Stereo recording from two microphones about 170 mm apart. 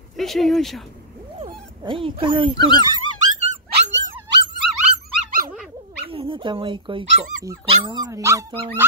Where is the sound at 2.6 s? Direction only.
25° left (ahead or behind).